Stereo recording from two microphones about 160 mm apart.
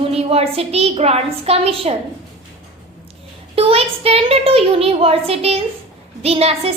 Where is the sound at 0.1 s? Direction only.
40° right (ahead or behind).